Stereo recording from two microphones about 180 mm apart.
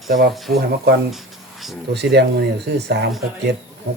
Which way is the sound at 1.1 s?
Centre (ahead or behind).